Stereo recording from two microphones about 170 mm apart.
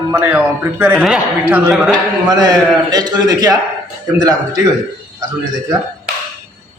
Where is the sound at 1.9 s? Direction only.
25° right (ahead or behind).